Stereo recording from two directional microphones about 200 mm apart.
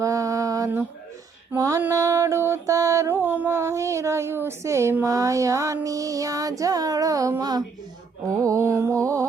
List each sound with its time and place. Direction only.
0.0 s mantra: 15° right (ahead or behind)
8.3 s music: 15° right (ahead or behind)